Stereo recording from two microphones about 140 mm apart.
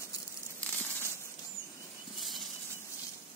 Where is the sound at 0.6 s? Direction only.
10° left (ahead or behind).